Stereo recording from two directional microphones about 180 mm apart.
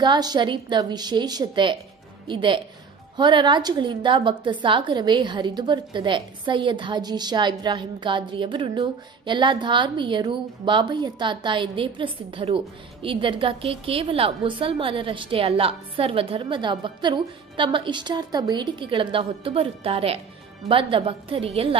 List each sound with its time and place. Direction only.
0.0 s a woman's voice: 25° right (ahead or behind)